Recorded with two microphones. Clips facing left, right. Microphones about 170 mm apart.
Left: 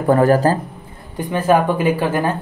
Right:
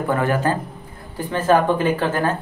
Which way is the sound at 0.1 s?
35° left (ahead or behind).